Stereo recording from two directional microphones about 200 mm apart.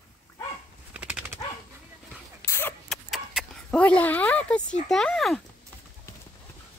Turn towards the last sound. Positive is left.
turn(degrees=15)  # may be behind; listen again after turning